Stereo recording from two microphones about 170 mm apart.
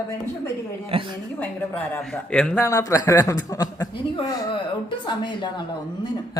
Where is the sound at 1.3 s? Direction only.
10° left (ahead or behind).